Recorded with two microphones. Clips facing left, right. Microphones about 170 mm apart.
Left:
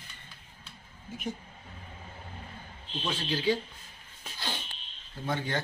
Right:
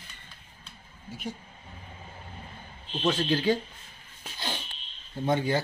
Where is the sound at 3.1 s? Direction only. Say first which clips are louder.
Right 5 dB; 50° right (ahead or behind).